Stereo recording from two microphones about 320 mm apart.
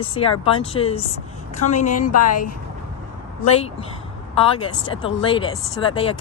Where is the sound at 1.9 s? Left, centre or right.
Left.